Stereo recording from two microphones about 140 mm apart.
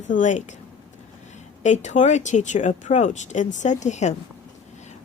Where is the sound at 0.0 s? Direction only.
60° left (ahead or behind).